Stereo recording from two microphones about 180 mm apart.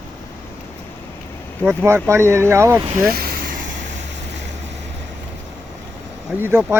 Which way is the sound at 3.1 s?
55° right (ahead or behind).